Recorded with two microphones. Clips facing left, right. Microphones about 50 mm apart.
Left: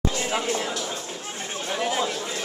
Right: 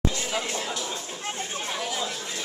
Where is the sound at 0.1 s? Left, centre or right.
Left.